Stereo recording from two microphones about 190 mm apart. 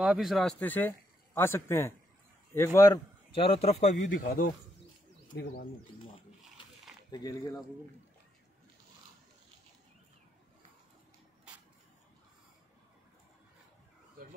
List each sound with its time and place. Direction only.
0.0 s a man's voice: 5° right (ahead or behind); by 3.0 s 15° left (ahead or behind)
3.3 s a man's voice: 30° left (ahead or behind)
4.1 s speech: 50° left (ahead or behind)
7.1 s speech: 20° left (ahead or behind)